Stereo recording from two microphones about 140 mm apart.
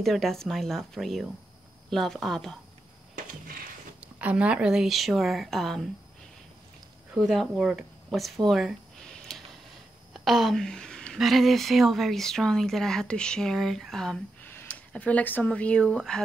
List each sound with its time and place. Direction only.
0.0 s speech: centre (ahead or behind)
3.2 s a sound: 90° right
4.0 s speech: 10° right (ahead or behind)
7.2 s speech: centre (ahead or behind)